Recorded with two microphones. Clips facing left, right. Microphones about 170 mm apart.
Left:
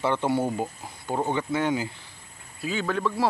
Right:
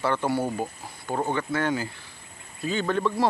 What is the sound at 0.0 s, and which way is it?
Speech, 20° left (ahead or behind).